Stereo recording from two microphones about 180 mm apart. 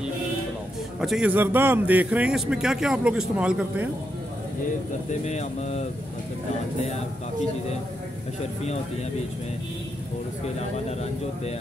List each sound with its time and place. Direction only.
1.0 s speech: 5° right (ahead or behind)
5.2 s speech: 40° left (ahead or behind)